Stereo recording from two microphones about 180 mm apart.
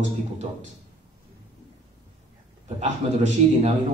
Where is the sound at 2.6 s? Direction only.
40° right (ahead or behind).